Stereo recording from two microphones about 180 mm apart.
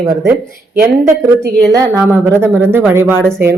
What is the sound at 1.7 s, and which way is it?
A woman's voice, 15° right (ahead or behind).